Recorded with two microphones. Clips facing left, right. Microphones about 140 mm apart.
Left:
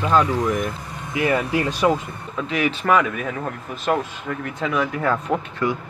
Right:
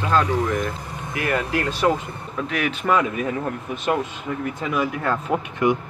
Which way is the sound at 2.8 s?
80° left.